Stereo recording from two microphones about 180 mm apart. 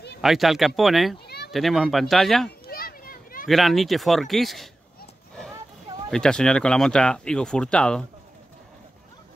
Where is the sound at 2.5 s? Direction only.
55° left (ahead or behind).